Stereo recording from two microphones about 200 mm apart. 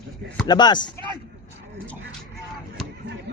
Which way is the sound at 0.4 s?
20° left (ahead or behind).